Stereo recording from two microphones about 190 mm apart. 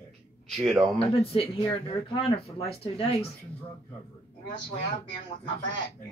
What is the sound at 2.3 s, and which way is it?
Speech, 30° left (ahead or behind).